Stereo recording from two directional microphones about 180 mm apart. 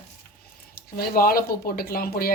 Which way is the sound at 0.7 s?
55° left (ahead or behind).